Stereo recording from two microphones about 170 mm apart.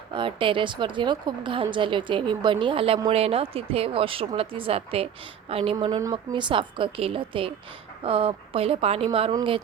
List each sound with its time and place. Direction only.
0.1 s a woman's voice: 30° right (ahead or behind)
5.8 s a woman's voice: 25° right (ahead or behind)